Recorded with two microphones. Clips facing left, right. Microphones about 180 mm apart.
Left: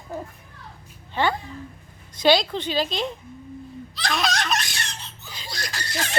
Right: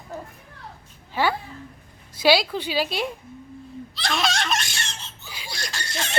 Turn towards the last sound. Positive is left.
turn(degrees=0)  # may be behind; listen again after turning